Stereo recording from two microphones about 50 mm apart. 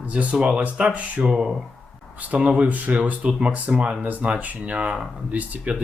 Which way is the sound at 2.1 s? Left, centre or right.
Right.